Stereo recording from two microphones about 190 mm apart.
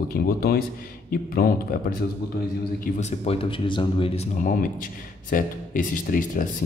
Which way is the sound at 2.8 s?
35° left (ahead or behind).